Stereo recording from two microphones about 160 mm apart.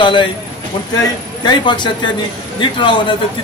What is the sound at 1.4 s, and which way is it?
A man's voice, 30° left (ahead or behind).